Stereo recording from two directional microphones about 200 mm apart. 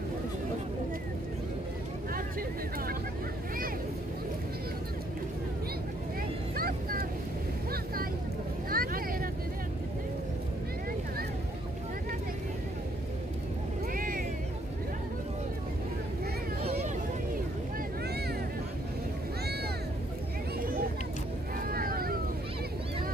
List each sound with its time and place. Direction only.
6.5 s vehicle: 45° right (ahead or behind)
7.7 s boat: 45° right (ahead or behind)
8.6 s vehicle: 45° right (ahead or behind)
13.9 s vehicle: 45° right (ahead or behind)
21.6 s boat: 45° right (ahead or behind)